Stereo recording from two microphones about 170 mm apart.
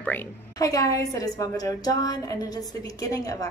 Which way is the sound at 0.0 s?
10° left (ahead or behind).